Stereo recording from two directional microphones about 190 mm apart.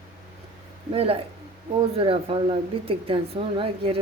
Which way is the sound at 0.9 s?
30° right (ahead or behind).